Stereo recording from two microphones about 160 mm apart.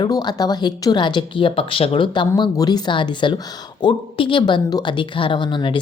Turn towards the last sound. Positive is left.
turn(degrees=30)  # may be behind; listen again after turning